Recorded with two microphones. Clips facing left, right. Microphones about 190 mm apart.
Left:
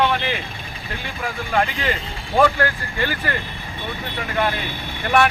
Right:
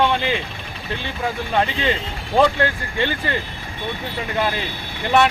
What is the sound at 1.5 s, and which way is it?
Speech, 25° right (ahead or behind).